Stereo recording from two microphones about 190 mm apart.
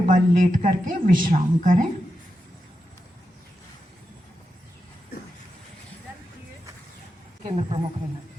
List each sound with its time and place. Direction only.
0.0 s a woman's voice: 45° right (ahead or behind)
7.4 s speech: 30° right (ahead or behind)